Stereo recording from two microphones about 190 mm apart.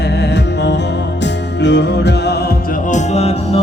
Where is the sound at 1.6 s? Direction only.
65° left (ahead or behind).